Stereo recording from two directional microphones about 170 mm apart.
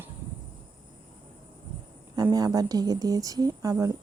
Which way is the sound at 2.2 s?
20° right (ahead or behind).